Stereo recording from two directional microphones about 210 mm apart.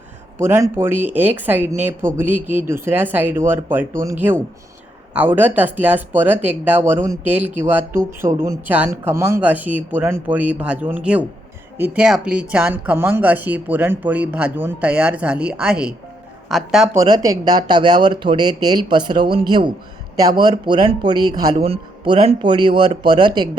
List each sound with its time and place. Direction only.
0.3 s speech: 15° right (ahead or behind)
3.9 s speech: 35° right (ahead or behind)
5.1 s speech: 10° right (ahead or behind)
16.9 s speech: 15° right (ahead or behind)